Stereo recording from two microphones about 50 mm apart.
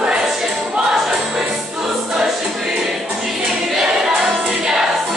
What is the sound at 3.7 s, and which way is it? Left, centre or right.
Choir, centre.